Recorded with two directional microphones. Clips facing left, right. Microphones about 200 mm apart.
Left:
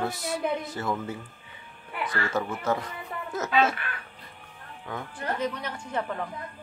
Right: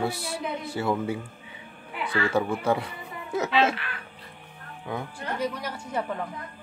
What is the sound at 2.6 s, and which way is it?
Speech, 10° right (ahead or behind).